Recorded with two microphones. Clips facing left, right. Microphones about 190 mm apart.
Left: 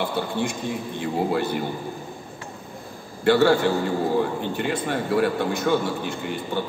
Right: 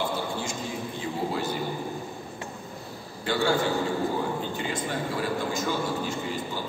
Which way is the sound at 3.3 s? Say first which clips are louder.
Left 7 dB; 65° left (ahead or behind).